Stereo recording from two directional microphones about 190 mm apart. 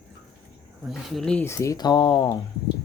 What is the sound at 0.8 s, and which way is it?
Speech, centre (ahead or behind).